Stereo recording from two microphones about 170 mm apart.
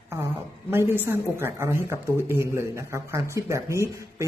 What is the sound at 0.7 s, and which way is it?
A man's voice, 15° right (ahead or behind).